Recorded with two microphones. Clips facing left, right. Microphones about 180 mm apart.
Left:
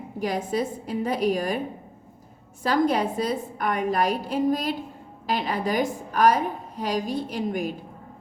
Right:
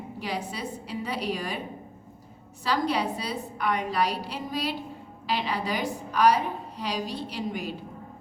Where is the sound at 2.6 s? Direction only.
50° left (ahead or behind).